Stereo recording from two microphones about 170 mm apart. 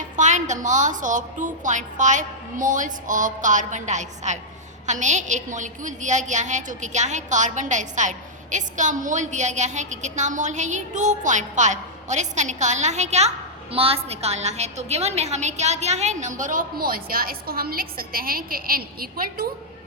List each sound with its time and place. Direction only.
0.2 s a woman's voice: 45° right (ahead or behind); by 19.5 s 60° right (ahead or behind)